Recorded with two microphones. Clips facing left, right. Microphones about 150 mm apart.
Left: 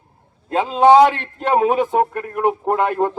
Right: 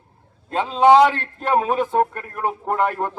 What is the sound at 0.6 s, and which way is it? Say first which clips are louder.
A man's voice: left 2 dB; 5° left (ahead or behind).